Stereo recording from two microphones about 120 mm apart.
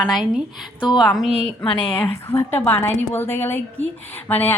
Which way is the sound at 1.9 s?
15° left (ahead or behind).